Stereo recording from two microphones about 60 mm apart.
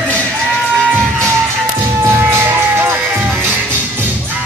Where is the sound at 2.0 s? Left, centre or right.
Right.